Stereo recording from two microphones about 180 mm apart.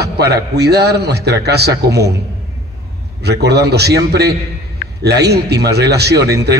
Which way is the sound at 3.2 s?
65° right (ahead or behind).